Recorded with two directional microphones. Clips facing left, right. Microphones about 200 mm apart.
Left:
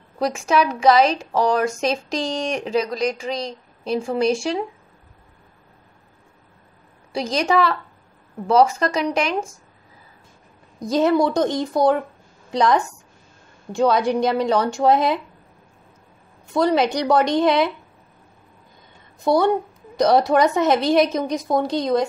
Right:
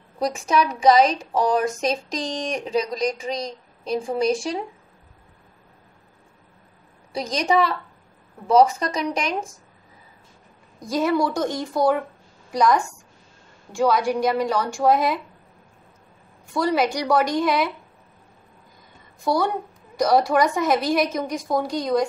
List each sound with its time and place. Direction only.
0.3 s a woman's voice: centre (ahead or behind)
7.2 s a woman's voice: centre (ahead or behind)
8.5 s a woman's voice: centre (ahead or behind)
10.8 s a woman's voice: 20° left (ahead or behind)
13.7 s a woman's voice: 20° left (ahead or behind)
16.5 s a woman's voice: 20° left (ahead or behind)
19.3 s a woman's voice: 25° left (ahead or behind)